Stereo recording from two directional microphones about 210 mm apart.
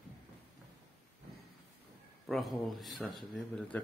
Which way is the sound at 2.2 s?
Centre (ahead or behind).